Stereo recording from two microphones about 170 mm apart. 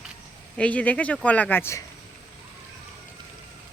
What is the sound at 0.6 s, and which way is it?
Speech, 10° left (ahead or behind).